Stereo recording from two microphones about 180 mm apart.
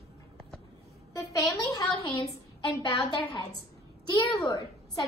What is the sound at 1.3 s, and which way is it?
Speech, 20° left (ahead or behind).